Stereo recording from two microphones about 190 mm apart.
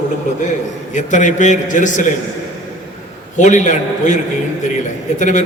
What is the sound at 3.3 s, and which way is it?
Speech, 40° left (ahead or behind).